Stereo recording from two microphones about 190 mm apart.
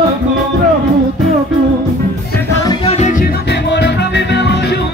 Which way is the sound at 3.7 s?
65° left (ahead or behind).